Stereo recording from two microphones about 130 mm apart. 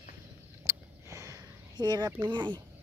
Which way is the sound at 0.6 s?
25° right (ahead or behind).